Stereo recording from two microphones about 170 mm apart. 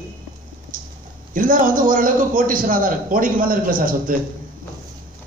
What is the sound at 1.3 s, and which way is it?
A man's voice, 55° right (ahead or behind).